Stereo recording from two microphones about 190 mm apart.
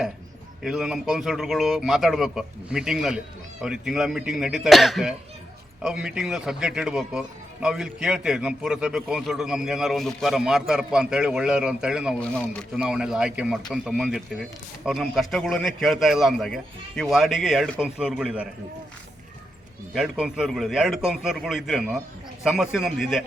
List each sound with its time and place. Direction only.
0.6 s a man's voice: 5° right (ahead or behind)
19.9 s a man's voice: centre (ahead or behind)